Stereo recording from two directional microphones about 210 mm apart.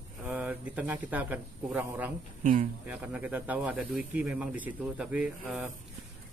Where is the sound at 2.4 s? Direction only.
35° right (ahead or behind).